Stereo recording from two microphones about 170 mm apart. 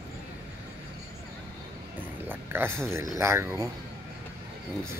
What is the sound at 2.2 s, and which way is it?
Speech, 10° right (ahead or behind).